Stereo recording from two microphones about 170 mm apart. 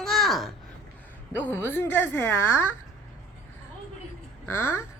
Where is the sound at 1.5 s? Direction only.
15° left (ahead or behind).